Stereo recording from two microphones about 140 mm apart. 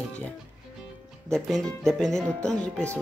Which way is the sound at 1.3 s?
5° left (ahead or behind).